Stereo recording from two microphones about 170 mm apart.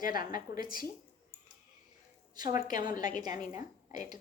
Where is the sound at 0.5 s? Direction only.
55° left (ahead or behind).